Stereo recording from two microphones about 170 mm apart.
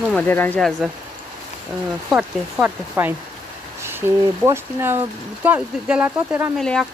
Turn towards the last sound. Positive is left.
turn(degrees=0)  # may be behind; listen again after turning